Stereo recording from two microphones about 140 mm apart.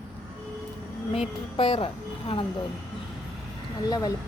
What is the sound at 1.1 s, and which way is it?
Speech, 45° left (ahead or behind).